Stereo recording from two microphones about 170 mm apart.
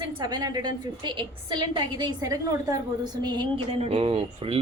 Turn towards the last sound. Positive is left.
turn(degrees=-35)  # may be behind; listen again after turning